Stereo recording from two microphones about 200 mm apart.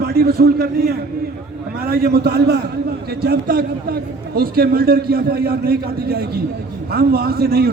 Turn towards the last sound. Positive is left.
turn(degrees=-50)  # may be behind; listen again after turning